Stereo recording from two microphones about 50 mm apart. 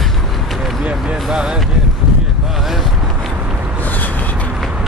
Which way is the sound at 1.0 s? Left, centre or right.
Centre.